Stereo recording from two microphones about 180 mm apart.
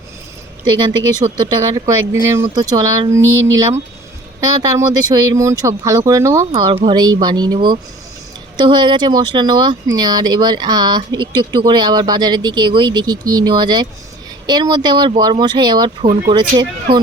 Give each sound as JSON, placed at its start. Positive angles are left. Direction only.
{"t": 0.8, "sound": "speech", "side_deg": -25}